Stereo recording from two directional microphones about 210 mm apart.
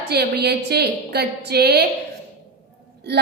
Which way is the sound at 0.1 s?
50° right (ahead or behind).